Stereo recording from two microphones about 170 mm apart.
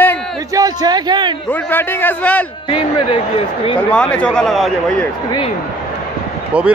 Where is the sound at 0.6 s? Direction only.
20° right (ahead or behind).